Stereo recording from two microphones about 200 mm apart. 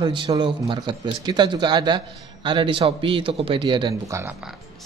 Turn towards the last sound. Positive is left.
turn(degrees=-15)  # may be behind; listen again after turning